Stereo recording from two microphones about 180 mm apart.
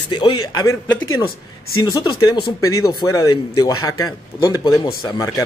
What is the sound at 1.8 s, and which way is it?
Speech, 25° left (ahead or behind).